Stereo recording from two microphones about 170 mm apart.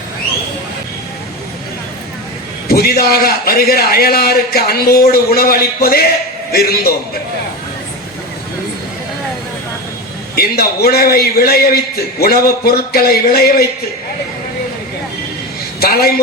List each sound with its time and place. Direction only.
2.6 s a man's voice: 65° left (ahead or behind)
10.3 s a man's voice: 65° left (ahead or behind)
15.8 s a man's voice: 65° left (ahead or behind)